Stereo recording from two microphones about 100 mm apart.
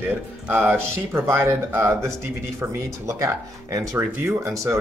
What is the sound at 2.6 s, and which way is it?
Speech, 30° right (ahead or behind).